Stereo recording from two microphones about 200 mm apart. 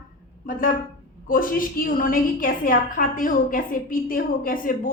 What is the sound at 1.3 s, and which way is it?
A woman's voice, 45° left (ahead or behind).